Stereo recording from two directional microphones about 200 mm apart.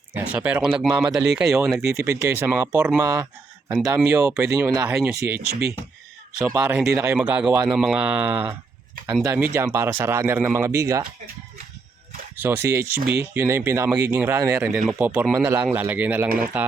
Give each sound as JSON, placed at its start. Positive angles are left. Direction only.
{"t": 0.3, "sound": "speech", "side_deg": -5}
{"t": 1.8, "sound": "speech", "side_deg": -15}
{"t": 5.5, "sound": "speech", "side_deg": -50}
{"t": 6.4, "sound": "speech", "side_deg": -10}
{"t": 12.4, "sound": "speech", "side_deg": -10}
{"t": 13.0, "sound": "speech", "side_deg": -50}
{"t": 13.3, "sound": "speech", "side_deg": -15}